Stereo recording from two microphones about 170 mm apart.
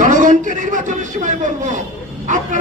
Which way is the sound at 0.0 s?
50° right (ahead or behind).